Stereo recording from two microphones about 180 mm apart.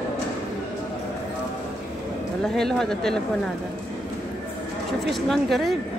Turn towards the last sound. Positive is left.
turn(degrees=0)  # may be behind; listen again after turning